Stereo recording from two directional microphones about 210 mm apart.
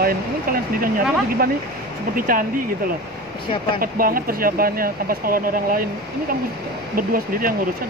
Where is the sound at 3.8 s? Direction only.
45° right (ahead or behind).